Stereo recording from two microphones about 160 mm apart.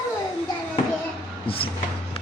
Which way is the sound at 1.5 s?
35° left (ahead or behind).